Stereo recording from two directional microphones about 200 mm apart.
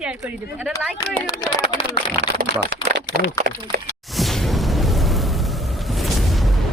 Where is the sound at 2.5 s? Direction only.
60° right (ahead or behind).